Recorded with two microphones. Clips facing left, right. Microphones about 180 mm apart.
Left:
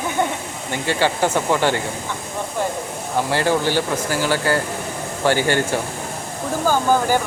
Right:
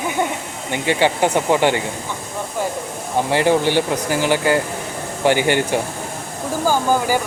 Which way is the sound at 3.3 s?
20° right (ahead or behind).